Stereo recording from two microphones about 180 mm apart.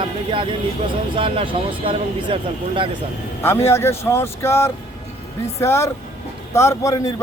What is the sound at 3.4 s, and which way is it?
Speech, 15° left (ahead or behind).